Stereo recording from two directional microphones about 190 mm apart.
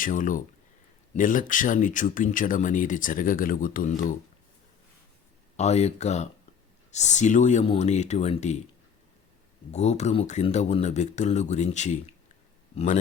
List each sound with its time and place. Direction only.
0.0 s speech: 45° left (ahead or behind)
5.5 s speech: 35° left (ahead or behind)
9.7 s a man's voice: 35° left (ahead or behind)